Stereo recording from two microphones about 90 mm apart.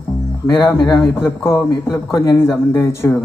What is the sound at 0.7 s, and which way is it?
A man's voice, 35° left (ahead or behind).